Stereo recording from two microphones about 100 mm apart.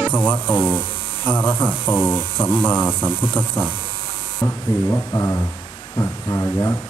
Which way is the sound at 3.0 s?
20° left (ahead or behind).